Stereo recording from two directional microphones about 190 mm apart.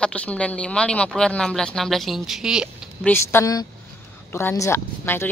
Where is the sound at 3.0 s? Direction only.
10° left (ahead or behind).